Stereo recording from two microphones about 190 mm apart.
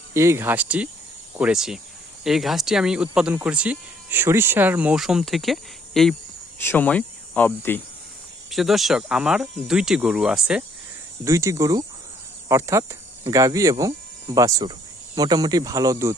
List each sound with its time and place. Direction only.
0.1 s speech: 15° right (ahead or behind); by 7.8 s 10° left (ahead or behind)
8.4 s speech: centre (ahead or behind)
11.3 s speech: 15° right (ahead or behind)